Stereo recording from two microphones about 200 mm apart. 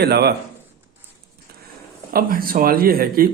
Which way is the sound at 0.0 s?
55° right (ahead or behind).